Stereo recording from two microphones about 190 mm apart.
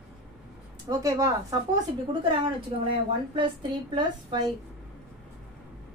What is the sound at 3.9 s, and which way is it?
Speech, 25° right (ahead or behind).